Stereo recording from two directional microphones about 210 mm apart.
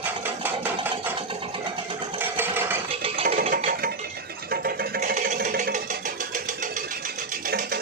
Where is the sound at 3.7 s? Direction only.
45° right (ahead or behind).